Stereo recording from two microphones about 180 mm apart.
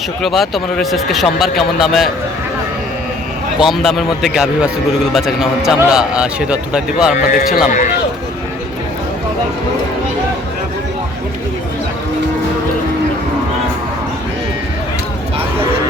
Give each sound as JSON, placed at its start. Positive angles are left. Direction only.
{"t": 0.2, "sound": "a man's voice", "side_deg": 0}
{"t": 3.6, "sound": "a man's voice", "side_deg": 0}
{"t": 7.3, "sound": "speech", "side_deg": 50}